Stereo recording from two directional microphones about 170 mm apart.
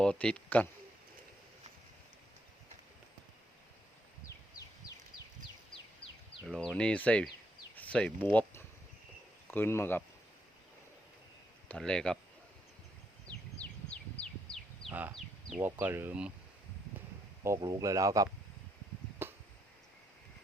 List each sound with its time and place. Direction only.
0.0 s speech: 5° left (ahead or behind)
6.4 s speech: centre (ahead or behind)
11.7 s speech: 5° left (ahead or behind)
13.9 s bird: 5° left (ahead or behind)
15.1 s a sound: centre (ahead or behind)
15.6 s speech: 10° right (ahead or behind)
17.4 s speech: 20° right (ahead or behind)
19.2 s a sound: 15° right (ahead or behind)